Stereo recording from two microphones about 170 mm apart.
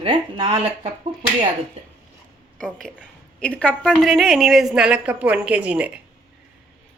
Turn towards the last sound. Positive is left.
turn(degrees=-5)  # may be behind; listen again after turning